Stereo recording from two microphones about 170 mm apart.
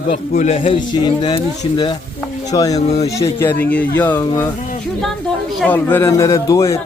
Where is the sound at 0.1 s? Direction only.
45° left (ahead or behind); by 2.8 s 20° left (ahead or behind).